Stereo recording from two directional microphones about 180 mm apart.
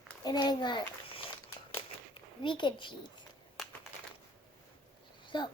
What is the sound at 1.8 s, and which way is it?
Crumpling, 30° left (ahead or behind).